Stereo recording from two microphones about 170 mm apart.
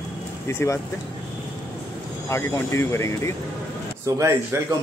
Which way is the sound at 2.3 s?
15° left (ahead or behind).